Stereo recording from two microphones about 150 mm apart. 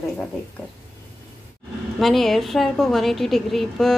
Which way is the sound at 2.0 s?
Centre (ahead or behind).